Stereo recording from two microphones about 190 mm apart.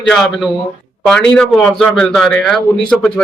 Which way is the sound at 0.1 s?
Centre (ahead or behind).